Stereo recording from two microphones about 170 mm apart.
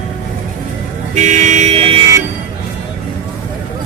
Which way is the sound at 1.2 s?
45° right (ahead or behind).